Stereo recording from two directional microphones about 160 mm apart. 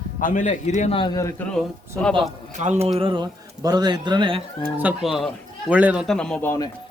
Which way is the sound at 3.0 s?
30° right (ahead or behind).